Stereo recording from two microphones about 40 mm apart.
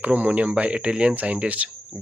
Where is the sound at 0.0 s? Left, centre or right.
Right.